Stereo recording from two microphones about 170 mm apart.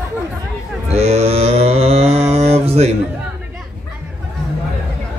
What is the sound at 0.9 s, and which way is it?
Mantra, 40° right (ahead or behind).